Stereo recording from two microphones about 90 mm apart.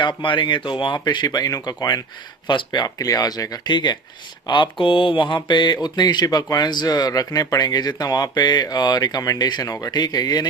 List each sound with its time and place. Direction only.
0.0 s speech: 65° left (ahead or behind); by 2.0 s 45° left (ahead or behind)
2.5 s mantra: 55° left (ahead or behind)